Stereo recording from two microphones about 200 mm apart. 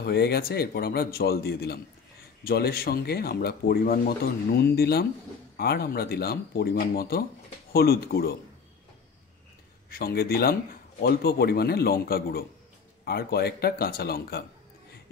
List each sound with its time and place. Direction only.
0.0 s a man's voice: 55° left (ahead or behind)
9.8 s a man's voice: 50° left (ahead or behind)